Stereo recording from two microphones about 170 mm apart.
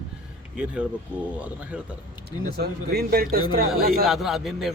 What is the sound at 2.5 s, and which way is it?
Speech, 70° right (ahead or behind).